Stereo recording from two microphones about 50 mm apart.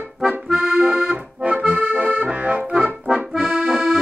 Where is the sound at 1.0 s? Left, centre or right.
Right.